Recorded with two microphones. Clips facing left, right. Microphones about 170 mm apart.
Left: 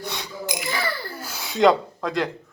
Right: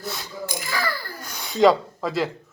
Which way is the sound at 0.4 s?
20° left (ahead or behind).